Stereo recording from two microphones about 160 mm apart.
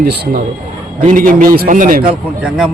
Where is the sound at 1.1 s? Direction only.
55° right (ahead or behind).